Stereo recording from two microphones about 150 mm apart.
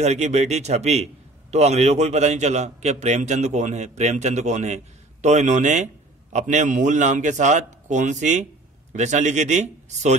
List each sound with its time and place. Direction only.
0.0 s a man's voice: 50° right (ahead or behind)